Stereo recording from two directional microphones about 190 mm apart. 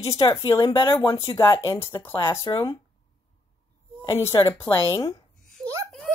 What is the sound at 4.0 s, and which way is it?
Speech, 15° left (ahead or behind).